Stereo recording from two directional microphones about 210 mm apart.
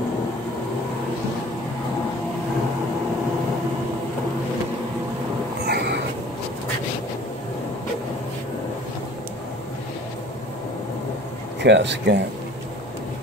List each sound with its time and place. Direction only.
5.7 s cat: 50° right (ahead or behind)
11.6 s speech: 55° right (ahead or behind)